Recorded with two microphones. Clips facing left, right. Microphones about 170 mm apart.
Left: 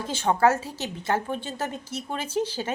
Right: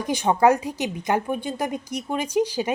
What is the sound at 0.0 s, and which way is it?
A woman's voice, 15° right (ahead or behind).